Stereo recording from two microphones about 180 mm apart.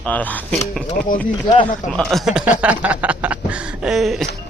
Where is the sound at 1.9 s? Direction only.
5° left (ahead or behind).